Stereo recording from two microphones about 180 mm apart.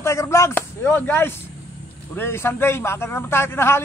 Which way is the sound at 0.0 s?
15° left (ahead or behind).